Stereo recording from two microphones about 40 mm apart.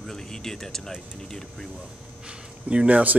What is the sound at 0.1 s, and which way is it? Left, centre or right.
A man's voice, centre.